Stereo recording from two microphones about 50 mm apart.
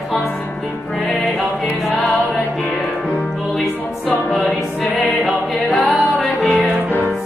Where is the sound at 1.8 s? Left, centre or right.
Centre.